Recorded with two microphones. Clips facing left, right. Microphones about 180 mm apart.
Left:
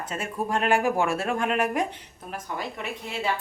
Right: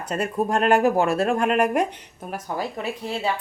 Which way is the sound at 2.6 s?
35° right (ahead or behind).